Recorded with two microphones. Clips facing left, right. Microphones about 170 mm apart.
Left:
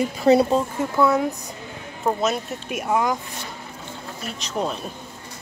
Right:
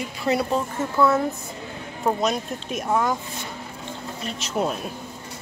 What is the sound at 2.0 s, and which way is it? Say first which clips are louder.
Speech: even; 5° left (ahead or behind).